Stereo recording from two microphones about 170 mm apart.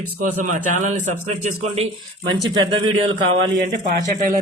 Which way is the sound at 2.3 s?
30° right (ahead or behind).